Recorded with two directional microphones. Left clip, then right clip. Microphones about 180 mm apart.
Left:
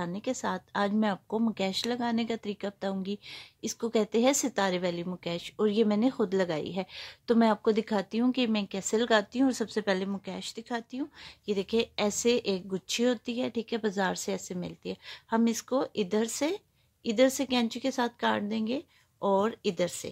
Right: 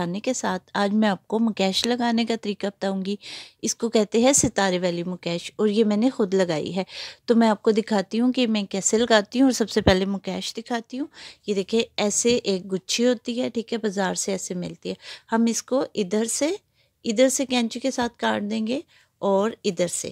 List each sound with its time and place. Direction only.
0.0 s speech: 45° right (ahead or behind)